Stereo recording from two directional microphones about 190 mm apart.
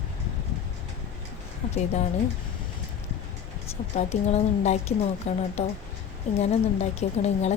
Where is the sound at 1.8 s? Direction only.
35° left (ahead or behind).